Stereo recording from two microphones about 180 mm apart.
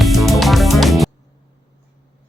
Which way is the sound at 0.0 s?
Centre (ahead or behind).